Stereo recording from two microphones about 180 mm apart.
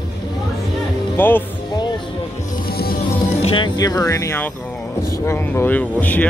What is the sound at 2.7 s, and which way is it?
Music, 55° left (ahead or behind).